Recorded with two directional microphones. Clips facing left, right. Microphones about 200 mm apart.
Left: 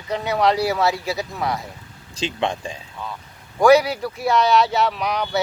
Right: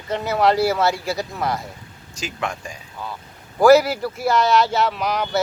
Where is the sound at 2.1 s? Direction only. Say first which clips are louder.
Left 4 dB; 30° left (ahead or behind).